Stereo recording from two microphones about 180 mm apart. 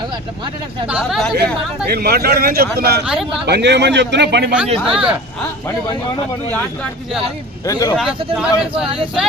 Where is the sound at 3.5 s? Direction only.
70° right (ahead or behind).